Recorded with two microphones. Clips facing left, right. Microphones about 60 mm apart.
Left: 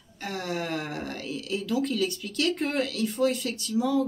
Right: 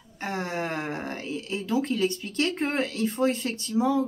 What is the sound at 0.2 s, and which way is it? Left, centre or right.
Speech, right.